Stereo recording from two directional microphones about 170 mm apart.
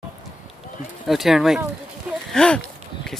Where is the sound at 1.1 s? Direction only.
Centre (ahead or behind).